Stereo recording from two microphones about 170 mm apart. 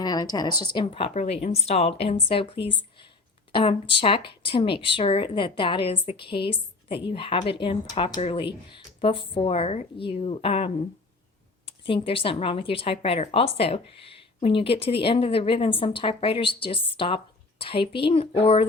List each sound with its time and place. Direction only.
0.0 s a woman's voice: 25° left (ahead or behind)